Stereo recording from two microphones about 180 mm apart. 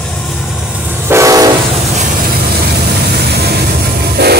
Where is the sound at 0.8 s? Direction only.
15° right (ahead or behind).